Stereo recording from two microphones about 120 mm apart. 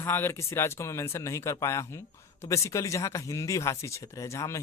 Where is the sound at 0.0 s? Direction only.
20° left (ahead or behind).